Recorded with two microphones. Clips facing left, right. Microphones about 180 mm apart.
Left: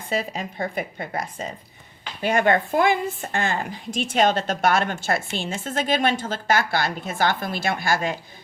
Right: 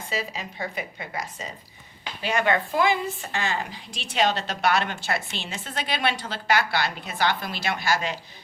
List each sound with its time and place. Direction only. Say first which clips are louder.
0.0 s speech: left 5 dB; 50° left (ahead or behind)